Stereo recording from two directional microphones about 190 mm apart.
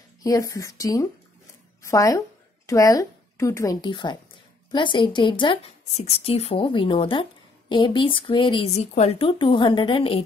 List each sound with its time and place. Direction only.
0.2 s a woman's voice: 15° left (ahead or behind)